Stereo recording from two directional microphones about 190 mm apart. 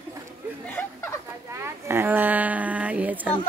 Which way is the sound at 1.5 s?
15° right (ahead or behind).